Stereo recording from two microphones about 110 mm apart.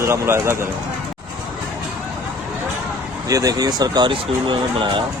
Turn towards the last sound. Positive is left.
turn(degrees=-50)  # may be behind; listen again after turning